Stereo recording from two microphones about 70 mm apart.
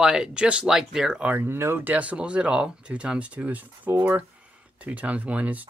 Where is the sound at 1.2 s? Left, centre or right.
Right.